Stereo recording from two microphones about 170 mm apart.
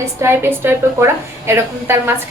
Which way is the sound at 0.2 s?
15° right (ahead or behind).